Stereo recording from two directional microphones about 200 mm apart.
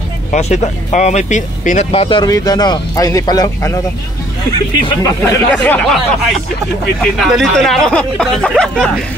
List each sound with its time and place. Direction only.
0.3 s speech: 35° left (ahead or behind); by 5.8 s 15° left (ahead or behind)
7.0 s speech: centre (ahead or behind)